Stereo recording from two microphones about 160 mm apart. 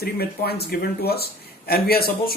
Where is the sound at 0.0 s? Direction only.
80° left.